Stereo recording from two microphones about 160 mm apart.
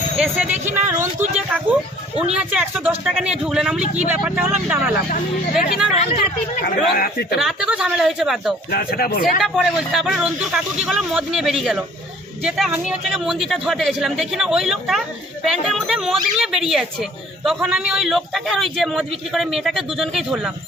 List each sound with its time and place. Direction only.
0.8 s speech: 45° right (ahead or behind)
1.5 s speech: 10° right (ahead or behind)
6.6 s speech: 70° left (ahead or behind)
7.3 s speech: 5° right (ahead or behind)
8.7 s speech: 75° left (ahead or behind)
9.4 s speech: 5° right (ahead or behind)